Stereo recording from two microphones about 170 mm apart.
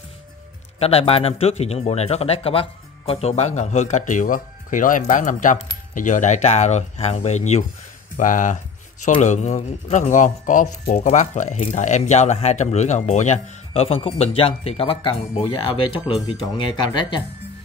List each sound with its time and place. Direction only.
0.7 s a man's voice: 35° left (ahead or behind)